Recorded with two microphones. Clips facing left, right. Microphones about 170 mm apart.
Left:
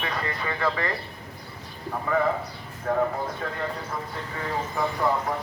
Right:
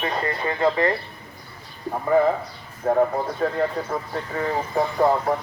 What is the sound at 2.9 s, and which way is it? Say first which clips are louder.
Speech: right 5 dB; 40° right (ahead or behind).